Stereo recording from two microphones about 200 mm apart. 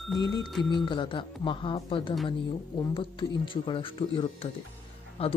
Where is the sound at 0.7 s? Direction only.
25° left (ahead or behind).